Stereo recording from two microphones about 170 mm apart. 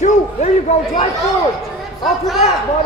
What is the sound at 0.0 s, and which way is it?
A man's voice, 45° left (ahead or behind).